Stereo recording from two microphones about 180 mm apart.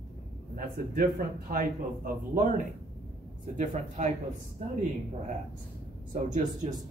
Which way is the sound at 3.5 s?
45° right (ahead or behind).